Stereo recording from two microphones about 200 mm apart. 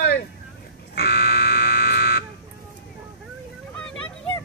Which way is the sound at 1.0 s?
50° left (ahead or behind).